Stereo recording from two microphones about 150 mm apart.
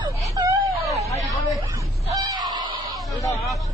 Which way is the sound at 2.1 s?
25° right (ahead or behind).